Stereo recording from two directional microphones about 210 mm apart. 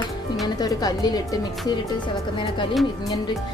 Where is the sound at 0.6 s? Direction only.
15° left (ahead or behind).